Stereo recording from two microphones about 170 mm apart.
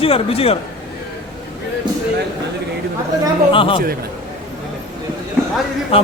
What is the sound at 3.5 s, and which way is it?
Speech, 30° left (ahead or behind).